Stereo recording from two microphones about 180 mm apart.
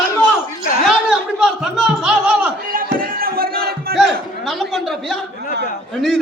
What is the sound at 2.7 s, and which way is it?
Music, 50° right (ahead or behind).